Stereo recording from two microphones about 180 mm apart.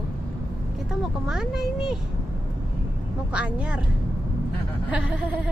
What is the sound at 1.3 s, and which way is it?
Speech, centre (ahead or behind).